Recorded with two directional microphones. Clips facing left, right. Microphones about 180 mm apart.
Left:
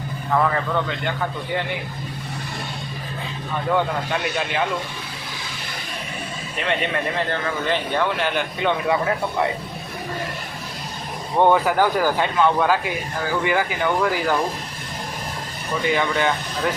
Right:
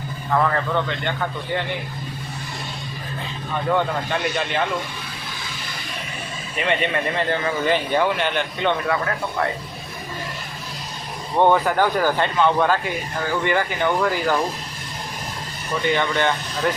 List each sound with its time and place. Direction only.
0.3 s a man's voice: centre (ahead or behind)
3.7 s a man's voice: 5° left (ahead or behind)
6.6 s a man's voice: centre (ahead or behind)
8.9 s speech: 20° left (ahead or behind)
11.3 s a man's voice: 5° left (ahead or behind)
15.9 s a man's voice: 5° left (ahead or behind)